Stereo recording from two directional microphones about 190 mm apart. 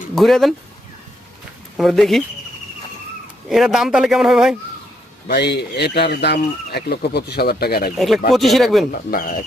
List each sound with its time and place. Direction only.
0.2 s a man's voice: centre (ahead or behind)
1.7 s a man's voice: centre (ahead or behind)
3.5 s a man's voice: centre (ahead or behind)
5.3 s speech: 60° left (ahead or behind)
7.9 s a man's voice: centre (ahead or behind)
8.9 s speech: 50° left (ahead or behind)